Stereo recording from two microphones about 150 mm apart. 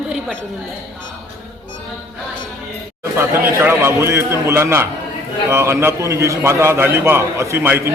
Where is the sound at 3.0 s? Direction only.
15° right (ahead or behind).